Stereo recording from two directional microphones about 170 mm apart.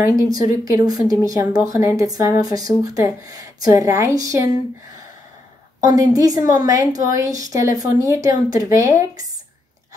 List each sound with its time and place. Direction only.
0.2 s speech: 20° right (ahead or behind)
5.9 s speech: 20° right (ahead or behind)